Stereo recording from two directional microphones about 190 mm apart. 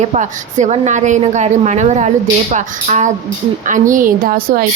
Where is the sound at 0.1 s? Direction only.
40° right (ahead or behind).